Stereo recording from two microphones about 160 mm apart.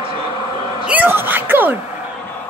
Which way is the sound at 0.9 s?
10° right (ahead or behind).